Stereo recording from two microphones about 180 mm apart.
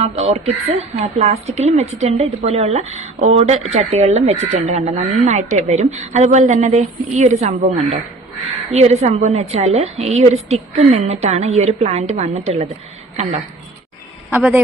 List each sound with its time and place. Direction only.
0.0 s a woman's voice: 35° right (ahead or behind)
14.3 s a man's voice: 10° right (ahead or behind)